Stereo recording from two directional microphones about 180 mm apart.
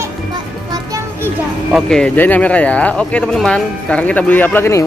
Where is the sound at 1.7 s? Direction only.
5° left (ahead or behind).